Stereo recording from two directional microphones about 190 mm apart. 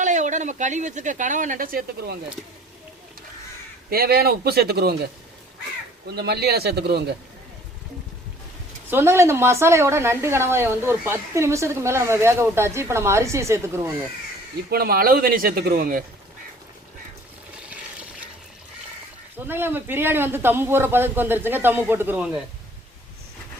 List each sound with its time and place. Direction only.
0.0 s speech: 40° right (ahead or behind)
3.8 s a man's voice: 55° right (ahead or behind)
6.1 s a man's voice: 60° right (ahead or behind)
8.9 s a woman's voice: 10° right (ahead or behind)
14.7 s speech: 50° right (ahead or behind)
19.5 s a woman's voice: 10° right (ahead or behind)